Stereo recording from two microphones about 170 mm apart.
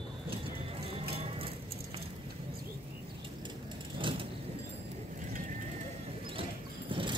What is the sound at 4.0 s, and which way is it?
Vehicle, 30° right (ahead or behind).